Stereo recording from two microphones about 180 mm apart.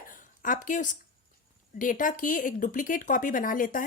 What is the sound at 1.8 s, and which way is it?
Speech, 45° left (ahead or behind).